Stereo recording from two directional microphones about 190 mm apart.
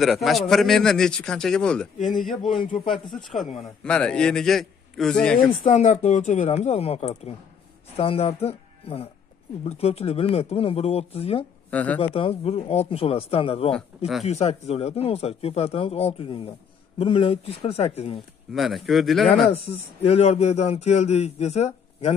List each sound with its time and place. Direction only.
0.0 s a man's voice: centre (ahead or behind)
2.6 s speech: 45° left (ahead or behind)
3.5 s a man's voice: 5° left (ahead or behind)
5.6 s speech: 40° left (ahead or behind)
11.7 s speech: 10° left (ahead or behind)
12.0 s speech: 30° left (ahead or behind)
13.7 s a man's voice: centre (ahead or behind)
14.2 s speech: 35° left (ahead or behind)
18.5 s a man's voice: centre (ahead or behind)
19.5 s speech: 30° left (ahead or behind)